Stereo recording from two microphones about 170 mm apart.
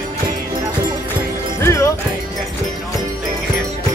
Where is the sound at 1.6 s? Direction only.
15° left (ahead or behind).